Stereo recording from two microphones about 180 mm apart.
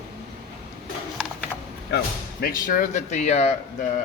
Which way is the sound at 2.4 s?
50° left (ahead or behind).